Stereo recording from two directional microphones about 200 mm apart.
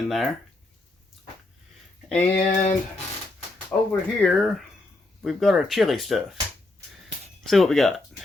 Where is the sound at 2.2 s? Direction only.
35° left (ahead or behind).